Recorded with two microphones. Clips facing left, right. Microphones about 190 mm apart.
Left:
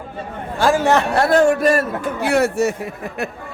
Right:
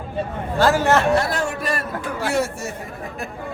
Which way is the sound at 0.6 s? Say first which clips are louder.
Left 1 dB; 15° left (ahead or behind).